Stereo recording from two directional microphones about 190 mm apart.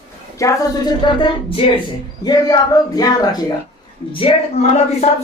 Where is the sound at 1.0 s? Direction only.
25° left (ahead or behind).